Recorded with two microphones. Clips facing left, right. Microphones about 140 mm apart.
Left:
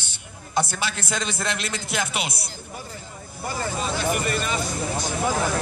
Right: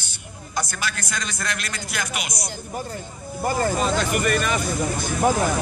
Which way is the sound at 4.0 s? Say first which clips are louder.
Right 3 dB; 65° right (ahead or behind).